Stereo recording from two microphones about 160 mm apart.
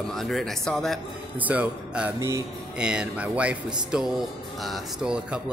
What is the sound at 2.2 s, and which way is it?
Speech, 20° right (ahead or behind).